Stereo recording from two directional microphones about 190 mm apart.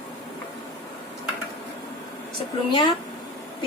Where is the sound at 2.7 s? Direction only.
25° left (ahead or behind).